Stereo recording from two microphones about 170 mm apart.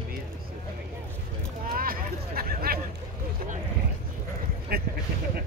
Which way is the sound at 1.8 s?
60° right (ahead or behind).